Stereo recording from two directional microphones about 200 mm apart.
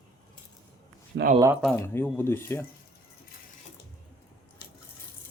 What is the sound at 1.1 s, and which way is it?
Speech, 60° right (ahead or behind).